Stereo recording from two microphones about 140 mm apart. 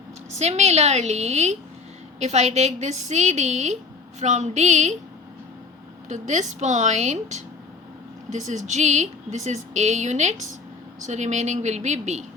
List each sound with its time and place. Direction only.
0.3 s a woman's voice: 50° right (ahead or behind)
6.1 s speech: 60° right (ahead or behind)